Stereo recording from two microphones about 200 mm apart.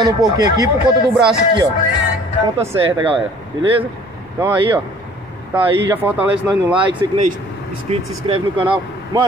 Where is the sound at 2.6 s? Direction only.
15° right (ahead or behind).